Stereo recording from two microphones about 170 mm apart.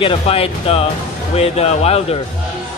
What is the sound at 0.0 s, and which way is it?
Speech, 35° left (ahead or behind).